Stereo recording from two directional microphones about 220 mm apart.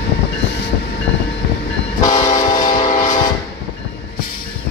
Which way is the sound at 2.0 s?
15° left (ahead or behind).